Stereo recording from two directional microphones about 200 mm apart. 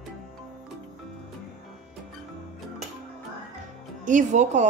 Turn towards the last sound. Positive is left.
turn(degrees=-40)  # may be behind; listen again after turning